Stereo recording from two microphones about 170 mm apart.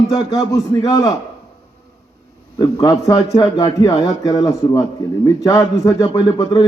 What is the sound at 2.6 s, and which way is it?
A man's voice, 20° left (ahead or behind).